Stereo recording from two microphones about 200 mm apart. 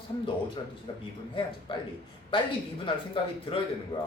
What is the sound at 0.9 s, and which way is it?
Speech, 25° left (ahead or behind).